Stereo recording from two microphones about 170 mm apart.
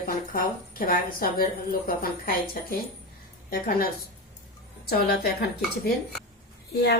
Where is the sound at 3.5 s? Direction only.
60° left (ahead or behind).